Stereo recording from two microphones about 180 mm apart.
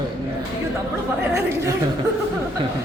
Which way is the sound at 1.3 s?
15° right (ahead or behind).